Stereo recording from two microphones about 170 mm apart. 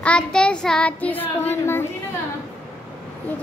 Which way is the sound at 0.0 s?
5° left (ahead or behind).